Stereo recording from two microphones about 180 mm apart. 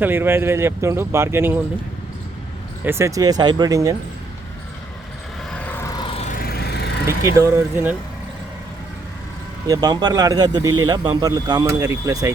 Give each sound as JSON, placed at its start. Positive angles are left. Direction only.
{"t": 0.0, "sound": "speech", "side_deg": -10}
{"t": 2.8, "sound": "a man's voice", "side_deg": -15}
{"t": 5.5, "sound": "vehicle", "side_deg": 10}
{"t": 6.3, "sound": "vehicle", "side_deg": 55}
{"t": 7.3, "sound": "speech", "side_deg": -15}
{"t": 9.6, "sound": "a man's voice", "side_deg": -20}